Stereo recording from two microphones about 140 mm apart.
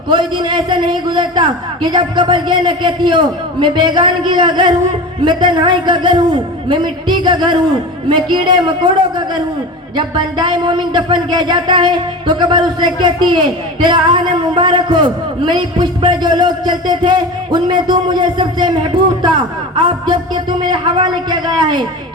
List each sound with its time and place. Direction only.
0.1 s speech: 35° right (ahead or behind)
19.7 s speech: 35° right (ahead or behind)